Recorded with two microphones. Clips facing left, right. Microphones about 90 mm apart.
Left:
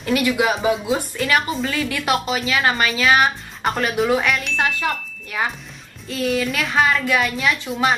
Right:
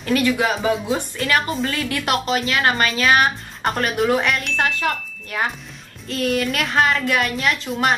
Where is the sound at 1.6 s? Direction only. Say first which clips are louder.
Left 1 dB; 40° right (ahead or behind).